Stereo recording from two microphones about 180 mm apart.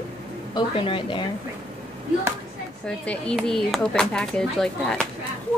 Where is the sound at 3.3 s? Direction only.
Centre (ahead or behind).